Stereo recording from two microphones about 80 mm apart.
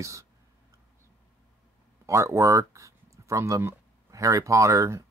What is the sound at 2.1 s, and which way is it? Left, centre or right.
Speech, right.